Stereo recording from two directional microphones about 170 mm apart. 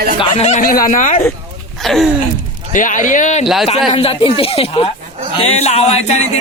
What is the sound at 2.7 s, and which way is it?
Speech, 50° left (ahead or behind).